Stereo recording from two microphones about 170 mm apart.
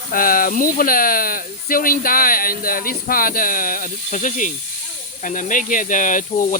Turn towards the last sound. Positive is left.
turn(degrees=50)  # may be behind; listen again after turning